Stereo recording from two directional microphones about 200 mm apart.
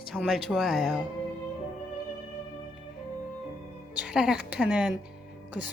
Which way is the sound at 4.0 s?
5° right (ahead or behind).